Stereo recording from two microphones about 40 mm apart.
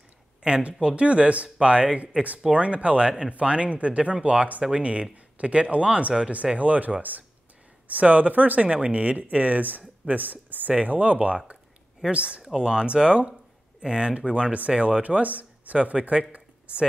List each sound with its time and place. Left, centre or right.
0.4 s speech: right
10.7 s speech: right